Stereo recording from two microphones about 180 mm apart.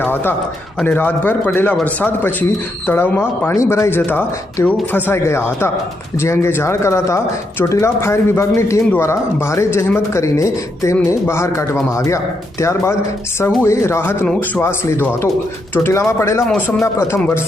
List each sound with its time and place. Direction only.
0.0 s a man's voice: 10° left (ahead or behind)
16.5 s speech: centre (ahead or behind)
16.8 s a man's voice: 15° left (ahead or behind)